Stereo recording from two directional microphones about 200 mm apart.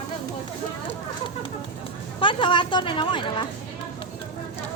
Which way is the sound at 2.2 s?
25° left (ahead or behind).